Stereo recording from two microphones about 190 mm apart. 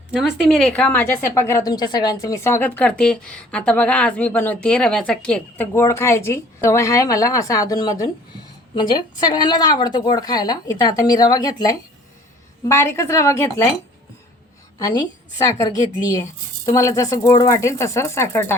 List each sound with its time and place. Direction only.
0.2 s a woman's voice: centre (ahead or behind); by 13.5 s 15° left (ahead or behind)
14.8 s a woman's voice: 20° left (ahead or behind)
16.0 s a woman's voice: 20° left (ahead or behind)